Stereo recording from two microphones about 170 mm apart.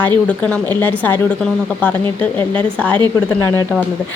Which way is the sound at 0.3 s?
10° left (ahead or behind).